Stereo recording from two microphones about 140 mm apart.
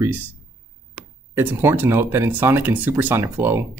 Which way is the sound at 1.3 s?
15° right (ahead or behind).